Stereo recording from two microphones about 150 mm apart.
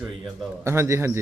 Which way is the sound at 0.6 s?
15° right (ahead or behind).